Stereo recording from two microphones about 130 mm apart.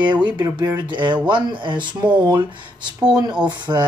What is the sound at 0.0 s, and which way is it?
Speech, 35° right (ahead or behind).